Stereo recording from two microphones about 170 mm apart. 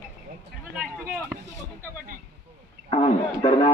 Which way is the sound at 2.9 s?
30° left (ahead or behind).